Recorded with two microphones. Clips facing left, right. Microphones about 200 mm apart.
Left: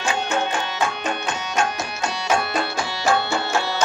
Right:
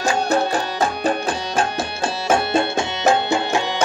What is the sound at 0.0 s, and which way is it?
Music, 40° right (ahead or behind).